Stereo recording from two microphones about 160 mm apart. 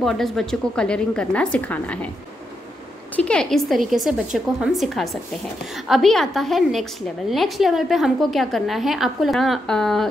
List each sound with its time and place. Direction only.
0.0 s a woman's voice: centre (ahead or behind)
3.2 s a woman's voice: 5° left (ahead or behind)